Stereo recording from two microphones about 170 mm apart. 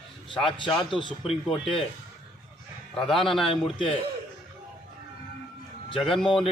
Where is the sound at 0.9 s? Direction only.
30° left (ahead or behind).